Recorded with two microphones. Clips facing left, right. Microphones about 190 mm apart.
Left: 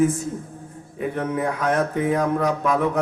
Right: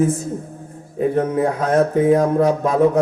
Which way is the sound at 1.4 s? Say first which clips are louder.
Right 3 dB; 35° right (ahead or behind).